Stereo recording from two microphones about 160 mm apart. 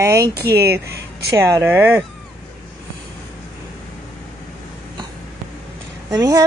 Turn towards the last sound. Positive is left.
turn(degrees=-25)  # may be behind; listen again after turning